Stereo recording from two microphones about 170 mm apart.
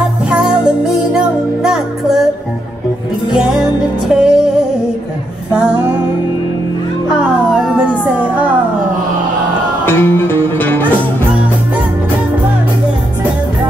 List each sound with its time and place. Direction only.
0.3 s music: 5° right (ahead or behind)
3.3 s music: 5° right (ahead or behind)
7.1 s music: 5° right (ahead or behind)
9.8 s music: 15° left (ahead or behind)